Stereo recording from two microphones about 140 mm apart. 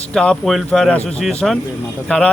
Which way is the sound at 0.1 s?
5° left (ahead or behind).